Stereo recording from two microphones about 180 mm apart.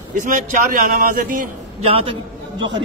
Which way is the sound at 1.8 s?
30° right (ahead or behind).